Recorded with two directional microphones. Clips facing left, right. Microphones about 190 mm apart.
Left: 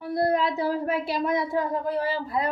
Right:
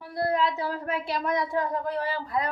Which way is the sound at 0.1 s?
35° left (ahead or behind).